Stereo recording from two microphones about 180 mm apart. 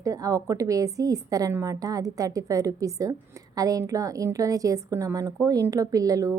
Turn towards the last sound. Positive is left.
turn(degrees=-20)  # may be behind; listen again after turning